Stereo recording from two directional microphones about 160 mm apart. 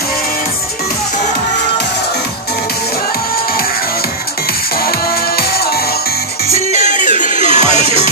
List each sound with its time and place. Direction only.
4.8 s music: 75° left (ahead or behind)
6.5 s music: 50° left (ahead or behind)